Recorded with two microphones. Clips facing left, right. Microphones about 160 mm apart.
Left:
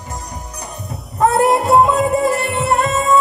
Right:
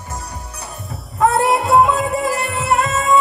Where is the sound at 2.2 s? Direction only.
Centre (ahead or behind).